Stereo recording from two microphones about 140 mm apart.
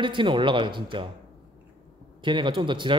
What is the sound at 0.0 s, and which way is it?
Speech, 35° right (ahead or behind).